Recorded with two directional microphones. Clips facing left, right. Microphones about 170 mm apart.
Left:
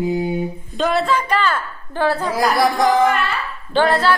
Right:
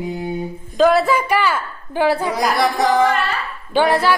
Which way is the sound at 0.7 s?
Centre (ahead or behind).